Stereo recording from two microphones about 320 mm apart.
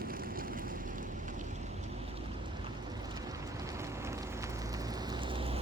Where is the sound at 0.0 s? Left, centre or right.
Right.